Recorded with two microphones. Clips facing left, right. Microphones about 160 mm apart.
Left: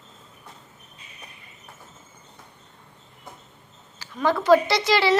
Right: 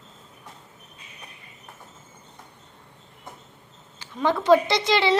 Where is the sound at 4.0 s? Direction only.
20° right (ahead or behind).